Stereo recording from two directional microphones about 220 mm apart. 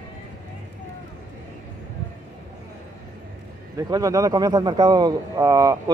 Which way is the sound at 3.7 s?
15° right (ahead or behind).